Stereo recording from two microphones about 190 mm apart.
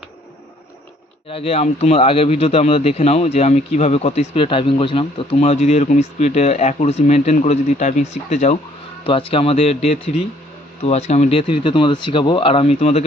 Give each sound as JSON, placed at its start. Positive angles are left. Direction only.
{"t": 1.3, "sound": "a man's voice", "side_deg": 30}